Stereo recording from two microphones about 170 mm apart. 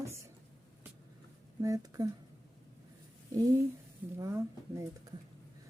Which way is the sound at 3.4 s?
20° right (ahead or behind).